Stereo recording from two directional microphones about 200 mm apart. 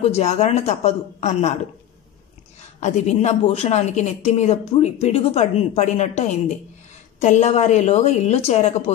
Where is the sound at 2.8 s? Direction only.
35° left (ahead or behind).